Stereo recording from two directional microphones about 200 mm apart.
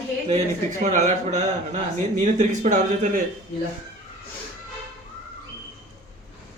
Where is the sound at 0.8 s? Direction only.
35° right (ahead or behind).